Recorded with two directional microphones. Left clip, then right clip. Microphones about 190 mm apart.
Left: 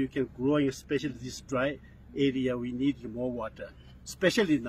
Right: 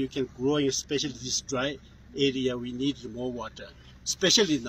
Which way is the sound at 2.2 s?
20° left (ahead or behind).